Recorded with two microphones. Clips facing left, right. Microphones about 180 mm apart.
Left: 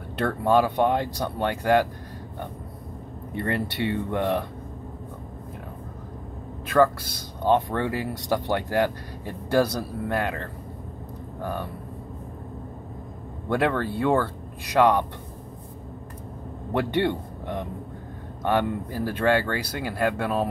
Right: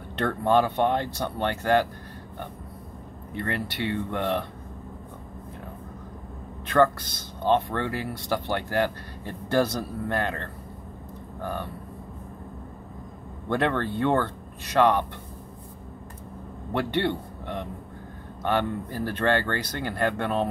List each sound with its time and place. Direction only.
0.2 s speech: 10° left (ahead or behind)
3.4 s speech: 20° left (ahead or behind)
6.7 s speech: 5° left (ahead or behind)
11.4 s speech: 10° left (ahead or behind)
13.5 s speech: 10° left (ahead or behind)
16.7 s a man's voice: 15° left (ahead or behind)